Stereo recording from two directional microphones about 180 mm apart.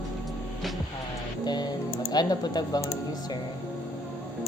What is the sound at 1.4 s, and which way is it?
Speech, 25° left (ahead or behind).